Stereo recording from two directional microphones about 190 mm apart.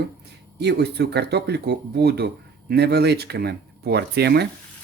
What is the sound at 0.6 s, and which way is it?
Speech, 60° right (ahead or behind).